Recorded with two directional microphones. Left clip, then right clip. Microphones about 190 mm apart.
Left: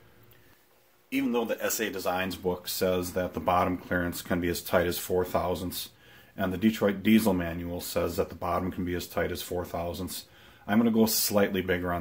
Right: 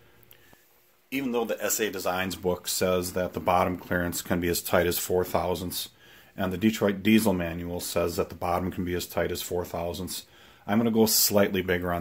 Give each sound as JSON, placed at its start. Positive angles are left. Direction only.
{"t": 1.1, "sound": "speech", "side_deg": -50}